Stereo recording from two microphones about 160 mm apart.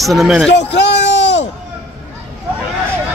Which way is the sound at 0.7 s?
90° left.